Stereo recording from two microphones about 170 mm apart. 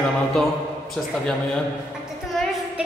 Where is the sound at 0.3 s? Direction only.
Centre (ahead or behind).